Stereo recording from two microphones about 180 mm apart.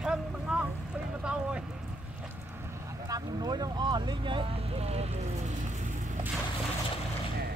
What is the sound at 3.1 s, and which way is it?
Speech, 20° right (ahead or behind).